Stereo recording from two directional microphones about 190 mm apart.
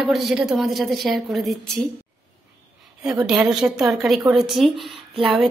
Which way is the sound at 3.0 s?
5° right (ahead or behind).